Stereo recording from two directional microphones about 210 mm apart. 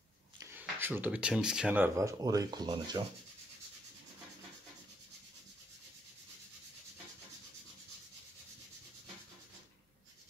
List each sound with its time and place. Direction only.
0.4 s speech: 10° right (ahead or behind)